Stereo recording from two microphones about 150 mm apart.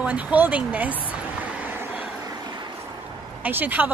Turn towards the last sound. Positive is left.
turn(degrees=-10)  # may be behind; listen again after turning